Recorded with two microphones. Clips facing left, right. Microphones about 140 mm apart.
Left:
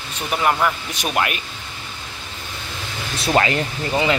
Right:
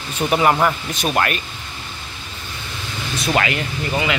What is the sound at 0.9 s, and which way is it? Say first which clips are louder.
Speech: right 2 dB; 10° left (ahead or behind).